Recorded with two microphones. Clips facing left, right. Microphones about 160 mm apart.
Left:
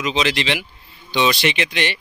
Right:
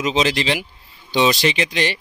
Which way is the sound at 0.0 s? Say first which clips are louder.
Right 2 dB; 40° right (ahead or behind).